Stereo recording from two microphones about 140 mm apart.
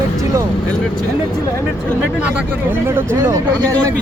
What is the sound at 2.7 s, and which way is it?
Speech, 15° right (ahead or behind).